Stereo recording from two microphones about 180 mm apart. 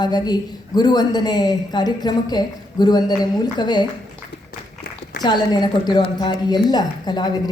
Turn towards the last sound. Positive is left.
turn(degrees=25)  # may be behind; listen again after turning